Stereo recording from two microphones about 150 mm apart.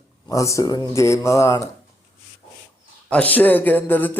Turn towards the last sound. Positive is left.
turn(degrees=15)  # may be behind; listen again after turning